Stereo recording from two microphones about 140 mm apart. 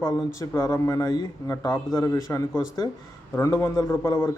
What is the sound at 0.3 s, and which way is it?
A man's voice, 25° left (ahead or behind).